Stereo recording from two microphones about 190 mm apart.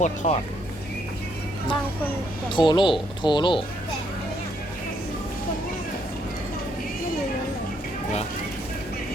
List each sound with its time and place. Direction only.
0.0 s speech: 40° left (ahead or behind)
2.5 s speech: 25° left (ahead or behind)